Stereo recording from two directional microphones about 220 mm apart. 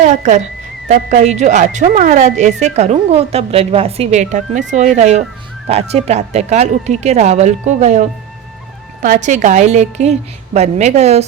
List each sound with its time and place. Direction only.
0.0 s speech: 30° right (ahead or behind)